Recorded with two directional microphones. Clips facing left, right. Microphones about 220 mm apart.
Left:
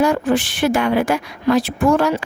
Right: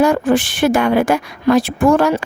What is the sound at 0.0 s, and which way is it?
A woman's voice, 50° right (ahead or behind).